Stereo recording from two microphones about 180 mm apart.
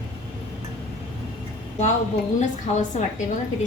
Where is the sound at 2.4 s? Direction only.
45° left (ahead or behind).